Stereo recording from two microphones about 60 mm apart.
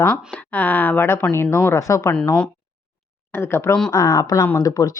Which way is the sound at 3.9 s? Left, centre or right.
Left.